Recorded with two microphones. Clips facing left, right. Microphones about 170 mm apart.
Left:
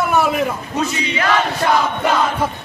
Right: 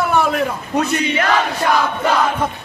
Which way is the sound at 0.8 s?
60° right (ahead or behind).